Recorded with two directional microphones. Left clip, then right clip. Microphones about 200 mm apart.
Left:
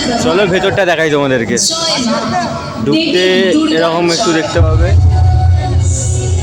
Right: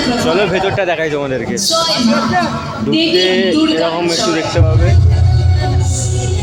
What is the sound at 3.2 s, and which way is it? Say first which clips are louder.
Speech: left 2 dB; 15° left (ahead or behind).